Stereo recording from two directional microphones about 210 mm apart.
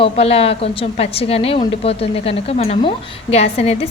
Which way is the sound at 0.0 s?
30° left (ahead or behind).